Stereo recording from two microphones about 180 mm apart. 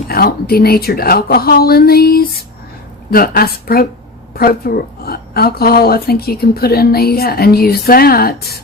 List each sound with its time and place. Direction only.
0.1 s speech: 55° left (ahead or behind)